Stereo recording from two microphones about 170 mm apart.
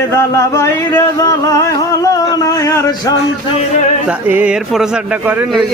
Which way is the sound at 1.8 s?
20° left (ahead or behind).